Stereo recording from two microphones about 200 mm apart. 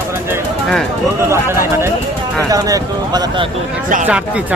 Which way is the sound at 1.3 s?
10° right (ahead or behind).